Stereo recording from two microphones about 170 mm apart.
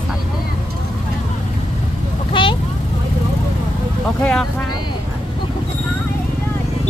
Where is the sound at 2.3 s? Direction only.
30° left (ahead or behind).